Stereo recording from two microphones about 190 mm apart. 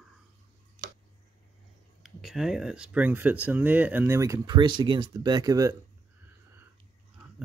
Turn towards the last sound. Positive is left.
turn(degrees=-20)  # may be behind; listen again after turning